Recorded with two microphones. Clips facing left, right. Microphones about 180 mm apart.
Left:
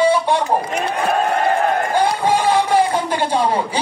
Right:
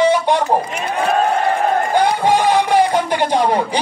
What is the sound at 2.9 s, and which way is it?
Speech, 15° right (ahead or behind).